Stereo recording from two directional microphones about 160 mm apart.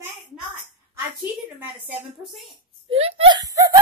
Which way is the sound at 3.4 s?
20° right (ahead or behind).